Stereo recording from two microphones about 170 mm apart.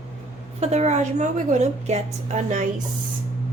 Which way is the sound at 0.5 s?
40° right (ahead or behind).